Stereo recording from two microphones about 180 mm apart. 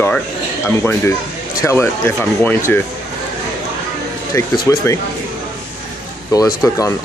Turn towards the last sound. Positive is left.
turn(degrees=20)  # may be behind; listen again after turning